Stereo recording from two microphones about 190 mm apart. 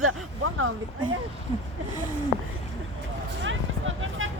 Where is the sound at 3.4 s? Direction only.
85° right.